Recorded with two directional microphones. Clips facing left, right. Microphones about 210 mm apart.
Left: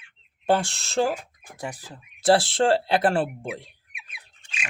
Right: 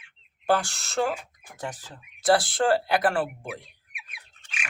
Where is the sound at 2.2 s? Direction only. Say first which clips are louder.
Left 3 dB; 25° left (ahead or behind).